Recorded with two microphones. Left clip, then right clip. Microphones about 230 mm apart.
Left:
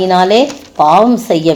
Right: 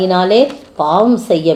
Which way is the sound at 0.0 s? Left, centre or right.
Left.